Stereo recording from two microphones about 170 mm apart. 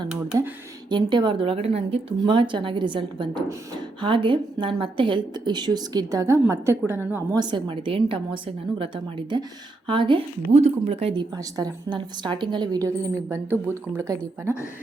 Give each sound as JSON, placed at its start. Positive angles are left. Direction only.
{"t": 0.9, "sound": "speech", "side_deg": -25}
{"t": 7.3, "sound": "a woman's voice", "side_deg": -25}
{"t": 14.2, "sound": "speech", "side_deg": 15}